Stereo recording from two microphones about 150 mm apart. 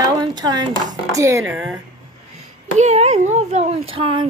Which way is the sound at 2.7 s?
45° right (ahead or behind).